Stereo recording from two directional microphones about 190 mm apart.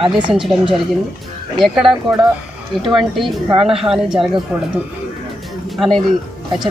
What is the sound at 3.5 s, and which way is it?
Speech, 30° right (ahead or behind).